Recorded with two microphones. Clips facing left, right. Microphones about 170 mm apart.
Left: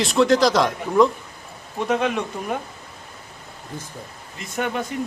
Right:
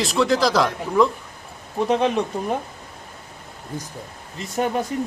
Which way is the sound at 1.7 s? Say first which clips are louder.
Right 2 dB; 30° right (ahead or behind).